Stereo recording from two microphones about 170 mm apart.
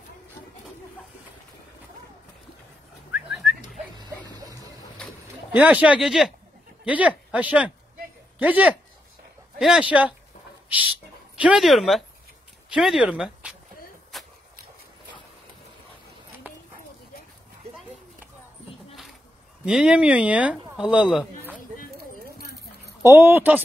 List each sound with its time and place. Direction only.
3.1 s bird: centre (ahead or behind)
4.0 s dog: 25° right (ahead or behind)
5.5 s speech: 10° right (ahead or behind)
11.3 s speech: 5° right (ahead or behind)
14.1 s a sound: centre (ahead or behind)
19.6 s speech: 5° right (ahead or behind)
23.1 s speech: 15° right (ahead or behind)